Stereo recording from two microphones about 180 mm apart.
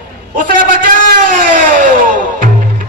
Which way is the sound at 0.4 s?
50° right (ahead or behind).